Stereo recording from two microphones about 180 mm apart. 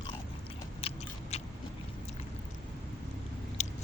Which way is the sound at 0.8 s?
30° left (ahead or behind).